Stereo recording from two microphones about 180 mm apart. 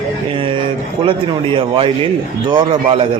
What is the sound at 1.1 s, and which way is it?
A man's voice, 30° right (ahead or behind).